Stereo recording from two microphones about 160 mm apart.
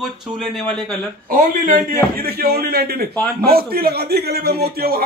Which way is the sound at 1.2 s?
55° right (ahead or behind).